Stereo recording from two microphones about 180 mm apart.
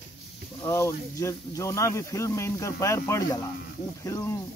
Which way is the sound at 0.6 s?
15° left (ahead or behind).